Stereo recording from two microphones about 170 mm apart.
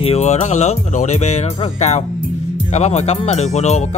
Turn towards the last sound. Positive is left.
turn(degrees=40)  # may be behind; listen again after turning